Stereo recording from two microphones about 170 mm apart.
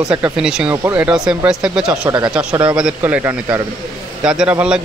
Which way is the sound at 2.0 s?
25° right (ahead or behind).